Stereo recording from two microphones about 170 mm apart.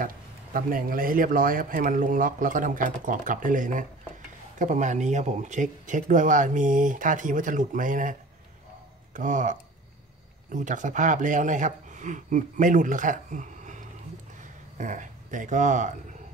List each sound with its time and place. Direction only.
0.0 s a man's voice: 55° right (ahead or behind)